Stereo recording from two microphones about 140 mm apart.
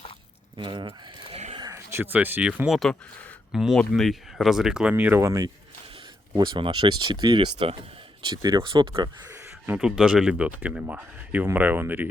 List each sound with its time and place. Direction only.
0.5 s speech: 35° right (ahead or behind)
1.5 s speech: 25° right (ahead or behind)
6.3 s speech: 35° right (ahead or behind)
9.7 s speech: 5° right (ahead or behind)